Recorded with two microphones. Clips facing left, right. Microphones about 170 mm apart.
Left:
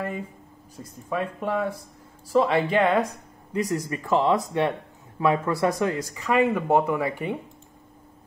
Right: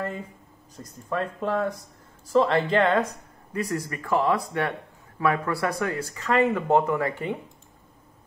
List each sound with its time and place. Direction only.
0.7 s speech: 10° left (ahead or behind)